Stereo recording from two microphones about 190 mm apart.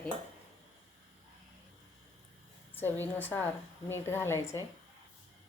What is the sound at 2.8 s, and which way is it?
Speech, 10° left (ahead or behind).